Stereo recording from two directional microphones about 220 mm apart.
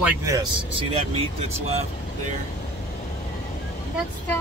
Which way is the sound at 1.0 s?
30° right (ahead or behind).